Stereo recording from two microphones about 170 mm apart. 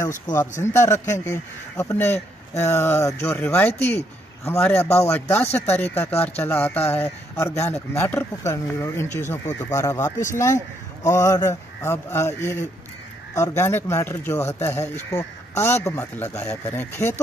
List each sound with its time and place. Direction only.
0.4 s speech: 15° left (ahead or behind)